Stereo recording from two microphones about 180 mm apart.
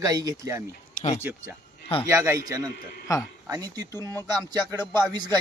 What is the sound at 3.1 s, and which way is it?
Speech, 20° left (ahead or behind).